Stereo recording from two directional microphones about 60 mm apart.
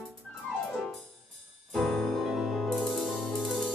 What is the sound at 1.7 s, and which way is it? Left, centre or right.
Music, centre.